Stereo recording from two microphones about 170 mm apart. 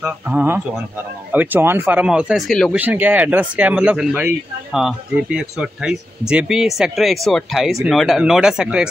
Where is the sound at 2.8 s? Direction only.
10° right (ahead or behind).